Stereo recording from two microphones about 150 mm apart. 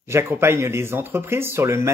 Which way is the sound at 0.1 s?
15° right (ahead or behind).